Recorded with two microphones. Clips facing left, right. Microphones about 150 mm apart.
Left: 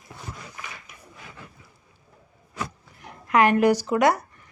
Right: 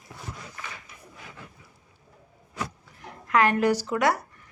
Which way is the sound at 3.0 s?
15° left (ahead or behind).